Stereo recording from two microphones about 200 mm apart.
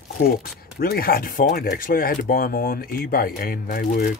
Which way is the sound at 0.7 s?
50° left (ahead or behind).